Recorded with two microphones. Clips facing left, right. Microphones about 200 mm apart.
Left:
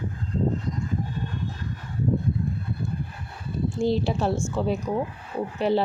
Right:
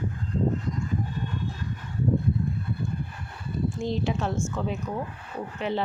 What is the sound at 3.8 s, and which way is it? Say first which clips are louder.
Speech: left 7 dB; 35° left (ahead or behind).